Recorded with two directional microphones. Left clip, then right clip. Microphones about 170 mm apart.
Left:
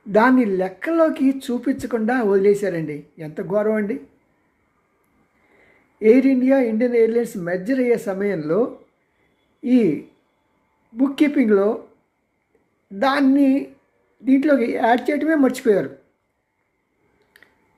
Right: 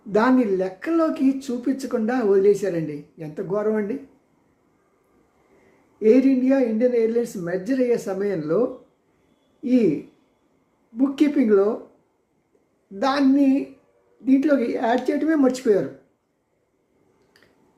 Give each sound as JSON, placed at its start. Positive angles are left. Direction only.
{"t": 0.1, "sound": "speech", "side_deg": 20}
{"t": 6.0, "sound": "speech", "side_deg": 20}
{"t": 10.9, "sound": "speech", "side_deg": 20}
{"t": 13.0, "sound": "speech", "side_deg": 20}